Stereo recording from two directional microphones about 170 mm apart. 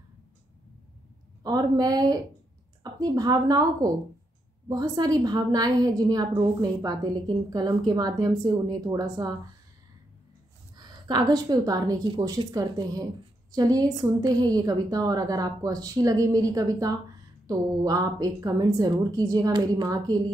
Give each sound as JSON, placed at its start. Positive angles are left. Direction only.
{"t": 1.4, "sound": "a woman's voice", "side_deg": -20}
{"t": 10.8, "sound": "a woman's voice", "side_deg": -25}